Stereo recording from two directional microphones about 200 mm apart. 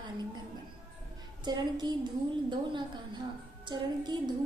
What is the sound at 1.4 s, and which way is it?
A woman's voice, 20° right (ahead or behind).